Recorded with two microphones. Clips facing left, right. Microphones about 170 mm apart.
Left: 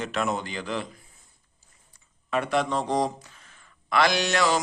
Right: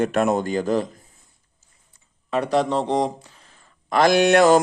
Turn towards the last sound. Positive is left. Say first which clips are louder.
# right 10 dB
turn(degrees=-50)  # may be behind; listen again after turning